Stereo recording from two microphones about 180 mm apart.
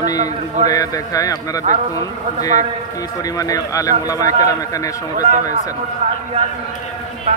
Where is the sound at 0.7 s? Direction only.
20° left (ahead or behind).